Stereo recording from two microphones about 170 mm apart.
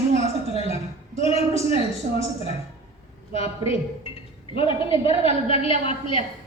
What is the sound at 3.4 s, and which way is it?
A woman's voice, 35° left (ahead or behind).